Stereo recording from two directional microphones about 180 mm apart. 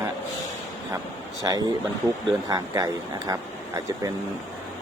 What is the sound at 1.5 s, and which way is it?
Speech, 20° right (ahead or behind).